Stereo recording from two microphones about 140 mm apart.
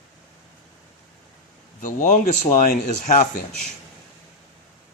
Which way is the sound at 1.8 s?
65° left (ahead or behind).